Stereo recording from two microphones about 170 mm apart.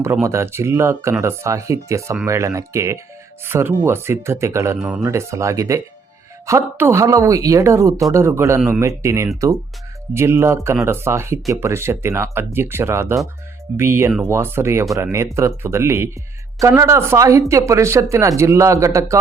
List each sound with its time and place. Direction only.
0.0 s speech: 15° right (ahead or behind)
4.8 s speech: 5° right (ahead or behind)
5.0 s speech: 15° right (ahead or behind)